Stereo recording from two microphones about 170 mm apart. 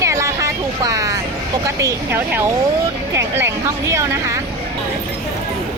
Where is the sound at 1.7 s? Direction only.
20° right (ahead or behind).